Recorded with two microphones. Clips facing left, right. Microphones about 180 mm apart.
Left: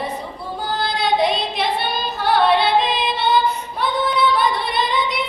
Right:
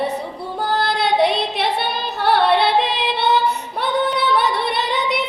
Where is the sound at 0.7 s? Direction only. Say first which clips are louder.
Right 1 dB; 65° right (ahead or behind).